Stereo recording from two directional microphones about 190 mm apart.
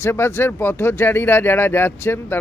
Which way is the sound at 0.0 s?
10° left (ahead or behind).